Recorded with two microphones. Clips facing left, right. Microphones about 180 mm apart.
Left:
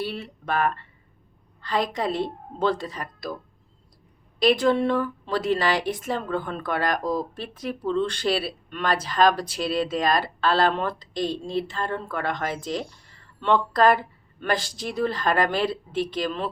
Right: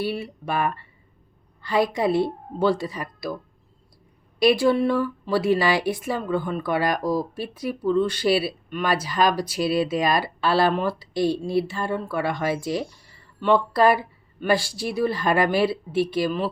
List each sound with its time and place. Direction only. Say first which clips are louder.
0.0 s speech: right 4 dB; 10° right (ahead or behind)
4.4 s speech: right 2 dB; 10° right (ahead or behind)
7.0 s speech: right 2 dB; 20° left (ahead or behind)
7.3 s speech: right 3 dB; 10° right (ahead or behind)